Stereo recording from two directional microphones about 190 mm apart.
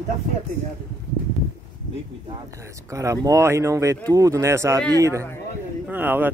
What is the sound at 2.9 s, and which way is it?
Speech, 15° right (ahead or behind).